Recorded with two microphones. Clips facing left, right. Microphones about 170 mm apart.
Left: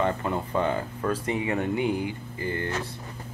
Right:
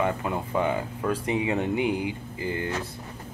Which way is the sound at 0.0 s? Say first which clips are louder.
Even; 10° right (ahead or behind).